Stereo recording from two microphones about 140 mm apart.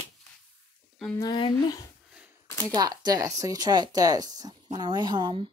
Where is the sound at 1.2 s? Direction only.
30° left (ahead or behind).